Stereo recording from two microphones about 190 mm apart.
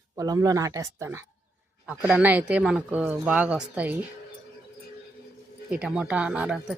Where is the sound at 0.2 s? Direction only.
20° right (ahead or behind).